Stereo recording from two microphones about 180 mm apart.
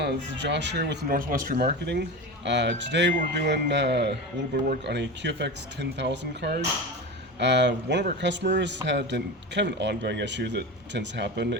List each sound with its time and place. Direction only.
0.0 s speech: 70° right (ahead or behind)